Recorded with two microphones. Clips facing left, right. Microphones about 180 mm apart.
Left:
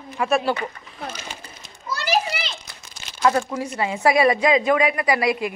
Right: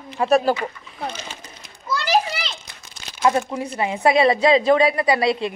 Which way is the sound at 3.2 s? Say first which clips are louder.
Right 1 dB; 20° right (ahead or behind).